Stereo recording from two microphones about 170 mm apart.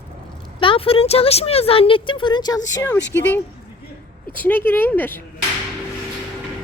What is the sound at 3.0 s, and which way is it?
Speech, 90° left.